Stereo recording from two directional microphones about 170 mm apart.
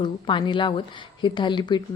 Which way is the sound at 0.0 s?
30° left (ahead or behind).